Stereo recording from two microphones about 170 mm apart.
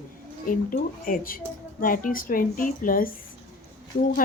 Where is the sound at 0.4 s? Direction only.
55° left (ahead or behind).